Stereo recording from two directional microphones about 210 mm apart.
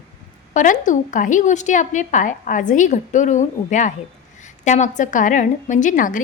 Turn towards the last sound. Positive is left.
turn(degrees=40)  # may be behind; listen again after turning